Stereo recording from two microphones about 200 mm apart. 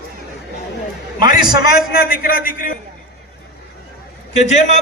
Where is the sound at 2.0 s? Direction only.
45° left (ahead or behind).